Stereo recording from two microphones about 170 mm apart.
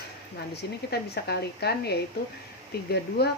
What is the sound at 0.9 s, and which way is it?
Speech, 75° left (ahead or behind).